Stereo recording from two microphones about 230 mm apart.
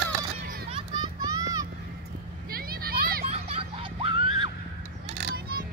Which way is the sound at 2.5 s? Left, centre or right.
Right.